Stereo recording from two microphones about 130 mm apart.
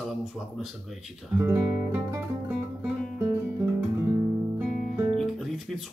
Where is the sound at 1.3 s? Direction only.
15° right (ahead or behind).